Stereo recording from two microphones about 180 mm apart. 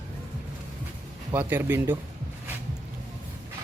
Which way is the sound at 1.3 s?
10° right (ahead or behind).